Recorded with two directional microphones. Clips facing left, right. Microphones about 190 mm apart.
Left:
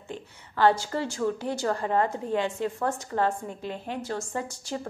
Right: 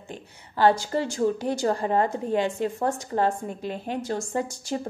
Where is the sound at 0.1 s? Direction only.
15° right (ahead or behind).